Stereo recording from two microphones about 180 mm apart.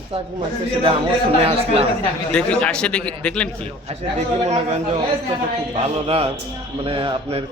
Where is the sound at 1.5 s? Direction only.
35° right (ahead or behind).